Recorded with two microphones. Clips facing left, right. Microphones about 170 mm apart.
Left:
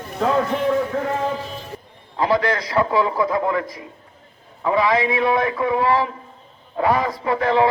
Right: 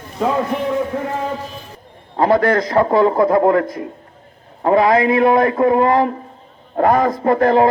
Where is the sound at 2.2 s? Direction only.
50° right (ahead or behind).